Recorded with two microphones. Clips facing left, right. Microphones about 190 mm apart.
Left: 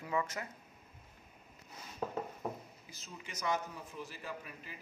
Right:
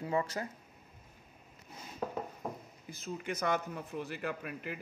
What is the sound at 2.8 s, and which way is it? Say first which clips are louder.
A man's voice: right 14 dB; 55° right (ahead or behind).